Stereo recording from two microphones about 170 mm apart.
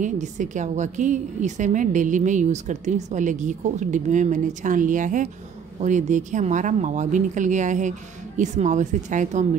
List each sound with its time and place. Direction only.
0.0 s a woman's voice: 45° right (ahead or behind)